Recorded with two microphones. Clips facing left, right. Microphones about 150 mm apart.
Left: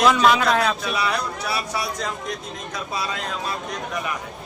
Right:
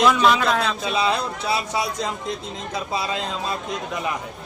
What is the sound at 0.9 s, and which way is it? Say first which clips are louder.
A man's voice: right 2 dB; 25° right (ahead or behind).